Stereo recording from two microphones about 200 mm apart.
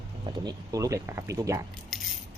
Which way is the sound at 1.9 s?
Centre (ahead or behind).